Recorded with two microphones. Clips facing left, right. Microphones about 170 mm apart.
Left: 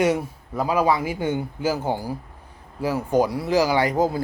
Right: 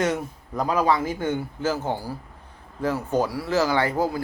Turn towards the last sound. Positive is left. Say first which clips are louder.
# left 2 dB
turn(degrees=20)  # may be behind; listen again after turning